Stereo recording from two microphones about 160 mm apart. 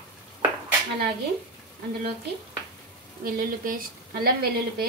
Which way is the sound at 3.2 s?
60° right (ahead or behind).